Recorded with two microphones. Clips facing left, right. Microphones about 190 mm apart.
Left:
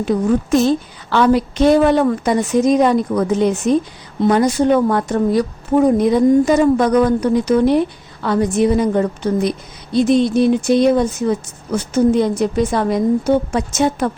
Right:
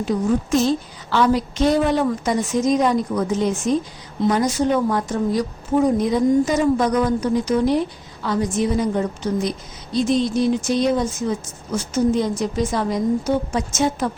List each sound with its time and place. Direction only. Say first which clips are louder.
1.1 s a woman's voice: left 4 dB; 60° left (ahead or behind)